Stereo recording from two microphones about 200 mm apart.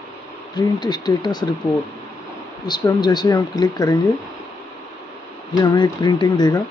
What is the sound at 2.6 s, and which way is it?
Speech, 20° left (ahead or behind).